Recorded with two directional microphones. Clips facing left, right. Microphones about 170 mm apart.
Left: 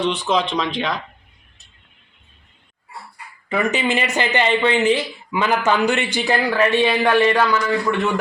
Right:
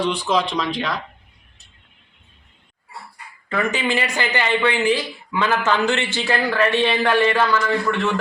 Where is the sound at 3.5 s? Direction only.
20° left (ahead or behind).